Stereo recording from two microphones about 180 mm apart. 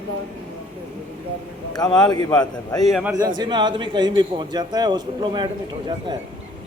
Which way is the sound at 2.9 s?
5° right (ahead or behind).